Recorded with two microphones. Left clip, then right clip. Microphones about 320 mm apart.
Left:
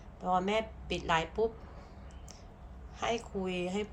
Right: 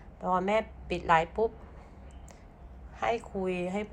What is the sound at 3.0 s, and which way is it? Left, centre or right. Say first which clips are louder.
Speech: right 4 dB; centre.